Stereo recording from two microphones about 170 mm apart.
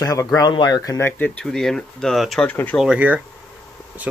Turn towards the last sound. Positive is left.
turn(degrees=-5)  # may be behind; listen again after turning